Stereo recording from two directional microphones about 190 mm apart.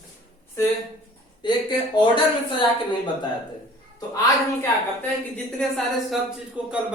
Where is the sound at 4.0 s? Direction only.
15° left (ahead or behind); by 6.8 s 5° right (ahead or behind).